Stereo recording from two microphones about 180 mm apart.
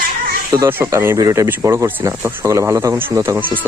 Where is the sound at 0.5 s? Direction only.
15° right (ahead or behind).